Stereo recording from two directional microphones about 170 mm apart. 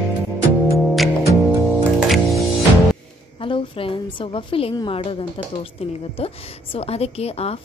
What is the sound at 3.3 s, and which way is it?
A woman's voice, 30° left (ahead or behind).